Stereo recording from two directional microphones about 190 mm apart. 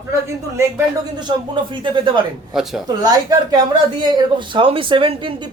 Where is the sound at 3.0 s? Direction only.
20° right (ahead or behind).